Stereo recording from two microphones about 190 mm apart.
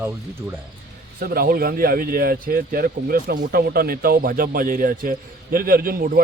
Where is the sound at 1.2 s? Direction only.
50° right (ahead or behind).